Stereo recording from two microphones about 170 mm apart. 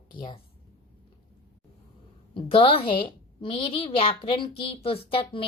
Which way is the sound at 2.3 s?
30° left (ahead or behind).